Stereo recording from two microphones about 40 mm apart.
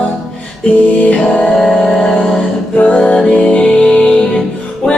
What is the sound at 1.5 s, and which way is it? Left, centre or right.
Music, centre.